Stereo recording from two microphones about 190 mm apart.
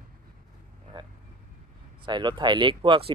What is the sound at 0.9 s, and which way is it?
Vehicle, 25° right (ahead or behind).